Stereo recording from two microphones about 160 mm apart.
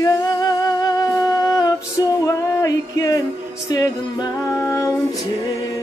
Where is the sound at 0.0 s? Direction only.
25° left (ahead or behind).